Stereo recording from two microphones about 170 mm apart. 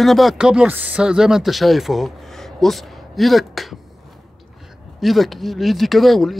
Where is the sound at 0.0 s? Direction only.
Centre (ahead or behind).